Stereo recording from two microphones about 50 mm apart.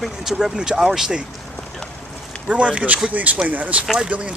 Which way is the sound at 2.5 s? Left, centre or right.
Right.